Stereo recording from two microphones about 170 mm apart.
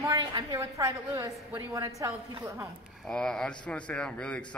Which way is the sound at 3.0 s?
5° left (ahead or behind).